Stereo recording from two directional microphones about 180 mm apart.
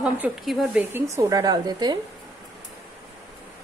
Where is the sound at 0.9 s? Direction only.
15° right (ahead or behind).